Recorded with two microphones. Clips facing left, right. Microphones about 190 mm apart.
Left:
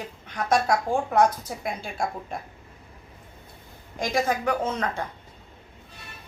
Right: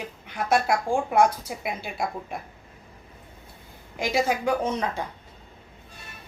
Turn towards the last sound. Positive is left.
turn(degrees=-15)  # may be behind; listen again after turning